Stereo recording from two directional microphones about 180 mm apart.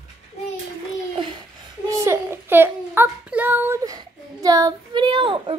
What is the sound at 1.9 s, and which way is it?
Child singing, 15° right (ahead or behind).